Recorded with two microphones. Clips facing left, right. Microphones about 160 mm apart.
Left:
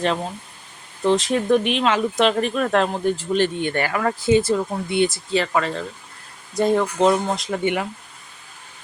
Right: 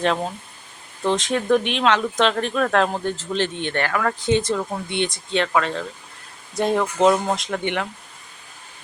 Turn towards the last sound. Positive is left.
turn(degrees=5)  # may be behind; listen again after turning